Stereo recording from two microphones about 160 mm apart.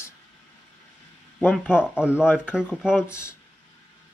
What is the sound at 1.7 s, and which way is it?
A man's voice, 5° right (ahead or behind).